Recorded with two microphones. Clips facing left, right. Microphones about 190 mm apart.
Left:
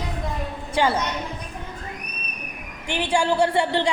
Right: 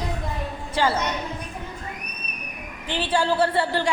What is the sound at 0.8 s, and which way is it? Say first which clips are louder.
Speech: left 1 dB; 15° left (ahead or behind).